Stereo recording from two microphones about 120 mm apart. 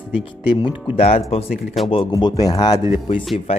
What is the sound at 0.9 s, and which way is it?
Speech, 60° left (ahead or behind).